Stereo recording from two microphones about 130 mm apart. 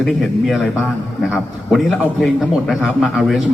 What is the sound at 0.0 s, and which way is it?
A man's voice, centre (ahead or behind).